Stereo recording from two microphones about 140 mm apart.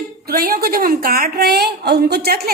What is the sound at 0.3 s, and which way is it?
A woman's voice, 90° right.